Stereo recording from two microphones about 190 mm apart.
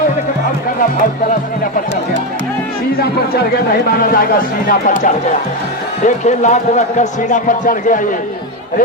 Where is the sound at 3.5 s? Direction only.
50° left (ahead or behind).